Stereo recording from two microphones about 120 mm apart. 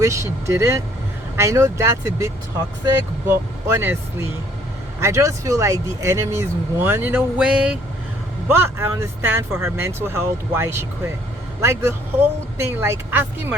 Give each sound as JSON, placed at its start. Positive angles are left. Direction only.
{"t": 0.0, "sound": "speech", "side_deg": -25}
{"t": 8.5, "sound": "speech", "side_deg": -20}